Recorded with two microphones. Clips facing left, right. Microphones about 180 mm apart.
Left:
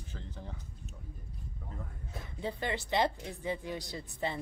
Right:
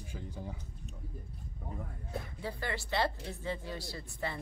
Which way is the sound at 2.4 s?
20° left (ahead or behind).